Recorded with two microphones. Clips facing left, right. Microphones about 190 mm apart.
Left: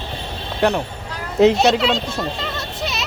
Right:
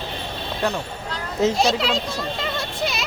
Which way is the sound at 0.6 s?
70° left (ahead or behind).